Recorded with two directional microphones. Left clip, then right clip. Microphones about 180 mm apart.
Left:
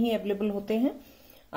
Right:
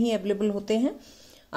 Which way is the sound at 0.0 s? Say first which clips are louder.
Right 2 dB; 40° right (ahead or behind).